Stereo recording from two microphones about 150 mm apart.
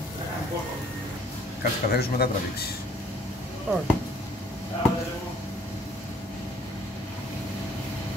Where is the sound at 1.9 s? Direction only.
90° left.